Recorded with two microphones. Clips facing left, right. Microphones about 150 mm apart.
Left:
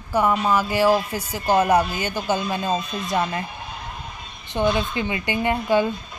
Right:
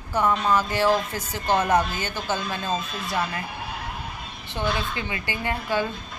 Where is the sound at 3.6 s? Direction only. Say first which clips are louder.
Right 1 dB; 10° right (ahead or behind).